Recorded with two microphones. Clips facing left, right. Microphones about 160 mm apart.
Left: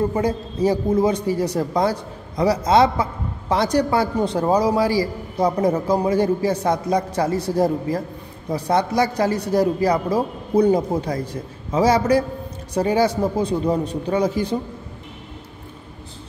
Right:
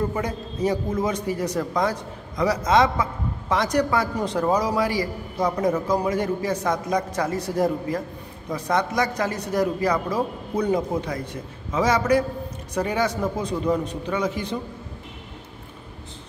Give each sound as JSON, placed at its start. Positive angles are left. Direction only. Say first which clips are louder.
{"t": 0.1, "sound": "a man's voice", "louder": "left 6 dB", "side_deg": 30}